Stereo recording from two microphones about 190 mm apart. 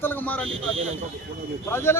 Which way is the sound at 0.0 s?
10° left (ahead or behind).